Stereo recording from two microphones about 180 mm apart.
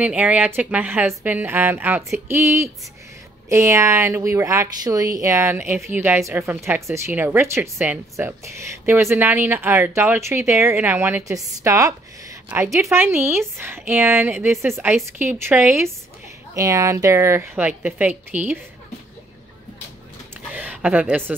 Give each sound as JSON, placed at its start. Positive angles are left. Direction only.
{"t": 0.0, "sound": "a woman's voice", "side_deg": -10}
{"t": 20.5, "sound": "a woman's voice", "side_deg": -10}